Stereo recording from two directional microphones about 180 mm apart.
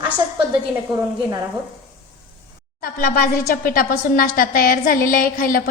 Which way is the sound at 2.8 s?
55° left (ahead or behind).